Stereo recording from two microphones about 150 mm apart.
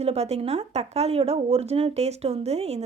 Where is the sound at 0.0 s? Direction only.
45° right (ahead or behind).